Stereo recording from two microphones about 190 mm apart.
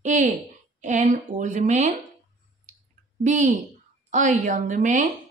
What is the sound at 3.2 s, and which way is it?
A woman's voice, 40° right (ahead or behind).